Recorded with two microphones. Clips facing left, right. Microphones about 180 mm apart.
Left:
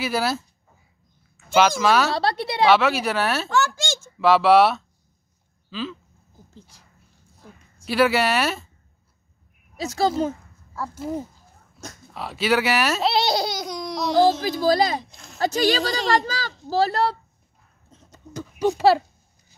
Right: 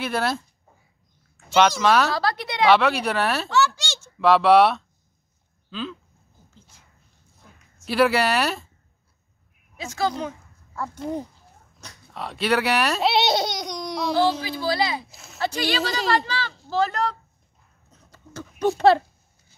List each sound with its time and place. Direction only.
0.0 s speech: 5° left (ahead or behind)
1.5 s speech: 5° left (ahead or behind)
2.1 s a woman's voice: 25° left (ahead or behind)
2.6 s speech: centre (ahead or behind)
3.4 s a sound: 50° left (ahead or behind)
4.2 s speech: centre (ahead or behind)
7.8 s speech: centre (ahead or behind)
9.8 s a child's voice: 35° left (ahead or behind)
10.7 s speech: 5° left (ahead or behind)
14.4 s speech: 45° left (ahead or behind)
15.0 s speech: 5° right (ahead or behind)
15.3 s a child's voice: 40° left (ahead or behind)
17.9 s a sound: 20° left (ahead or behind)
18.6 s speech: 10° left (ahead or behind)